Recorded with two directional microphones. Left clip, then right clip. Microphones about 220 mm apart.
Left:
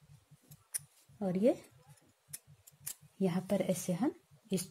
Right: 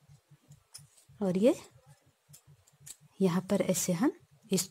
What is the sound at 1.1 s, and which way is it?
Speech, 30° right (ahead or behind).